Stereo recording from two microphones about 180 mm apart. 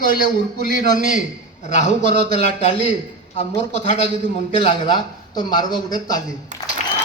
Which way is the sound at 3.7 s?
40° left (ahead or behind).